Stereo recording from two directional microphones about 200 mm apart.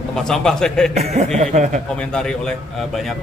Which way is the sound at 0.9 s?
35° right (ahead or behind).